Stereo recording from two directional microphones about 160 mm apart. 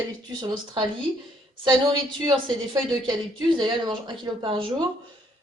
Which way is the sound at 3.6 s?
30° right (ahead or behind).